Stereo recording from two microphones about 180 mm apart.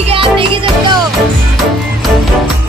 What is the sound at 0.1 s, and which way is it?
Music, 30° right (ahead or behind).